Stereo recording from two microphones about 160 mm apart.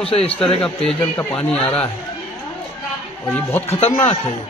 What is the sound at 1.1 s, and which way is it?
Speech, 10° left (ahead or behind).